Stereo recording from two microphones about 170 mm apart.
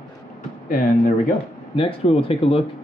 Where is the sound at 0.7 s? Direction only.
50° left (ahead or behind).